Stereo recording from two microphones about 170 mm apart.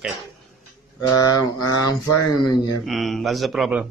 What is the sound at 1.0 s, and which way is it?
Speech, 20° left (ahead or behind).